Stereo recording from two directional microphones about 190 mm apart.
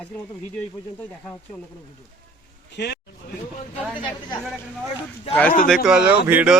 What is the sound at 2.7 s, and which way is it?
Speech, 60° left (ahead or behind).